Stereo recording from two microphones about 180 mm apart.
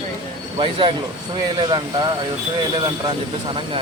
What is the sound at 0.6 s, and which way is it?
Speech, 30° right (ahead or behind).